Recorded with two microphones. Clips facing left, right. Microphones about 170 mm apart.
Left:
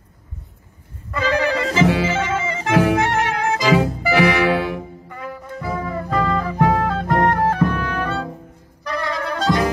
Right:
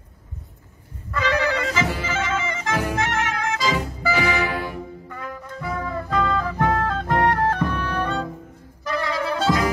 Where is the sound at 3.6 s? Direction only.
75° left (ahead or behind).